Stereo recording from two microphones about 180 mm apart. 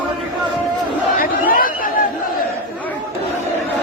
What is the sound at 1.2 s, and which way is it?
Crowd, 50° left (ahead or behind).